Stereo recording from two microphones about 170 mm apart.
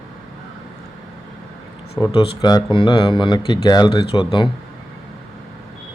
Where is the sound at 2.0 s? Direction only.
30° left (ahead or behind).